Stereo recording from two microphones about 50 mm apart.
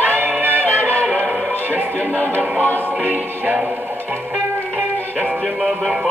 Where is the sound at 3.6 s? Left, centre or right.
Right.